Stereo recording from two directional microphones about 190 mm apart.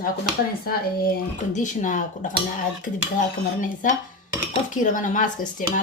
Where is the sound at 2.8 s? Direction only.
45° left (ahead or behind).